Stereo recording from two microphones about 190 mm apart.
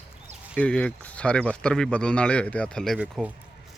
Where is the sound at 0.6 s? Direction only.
5° left (ahead or behind).